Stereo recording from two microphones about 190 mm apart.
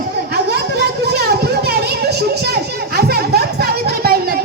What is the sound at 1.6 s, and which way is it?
Children playing, 55° right (ahead or behind).